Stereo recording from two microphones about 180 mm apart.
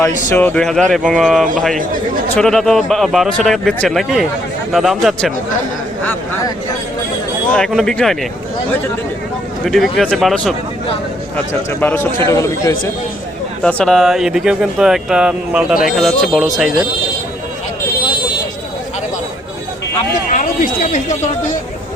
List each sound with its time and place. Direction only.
0.3 s speech: 10° left (ahead or behind)
6.1 s speech: 20° left (ahead or behind)
7.5 s speech: centre (ahead or behind)
9.6 s speech: centre (ahead or behind)
11.7 s speech: 10° left (ahead or behind)
13.6 s speech: 5° left (ahead or behind)
20.3 s a sound: 50° left (ahead or behind)